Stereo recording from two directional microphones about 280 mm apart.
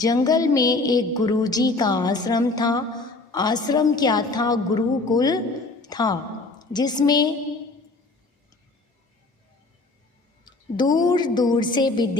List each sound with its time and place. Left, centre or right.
0.0 s a woman's voice: centre
10.8 s a woman's voice: centre